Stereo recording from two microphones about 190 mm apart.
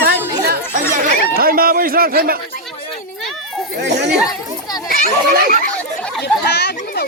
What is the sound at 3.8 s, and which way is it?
Speech, 65° right (ahead or behind).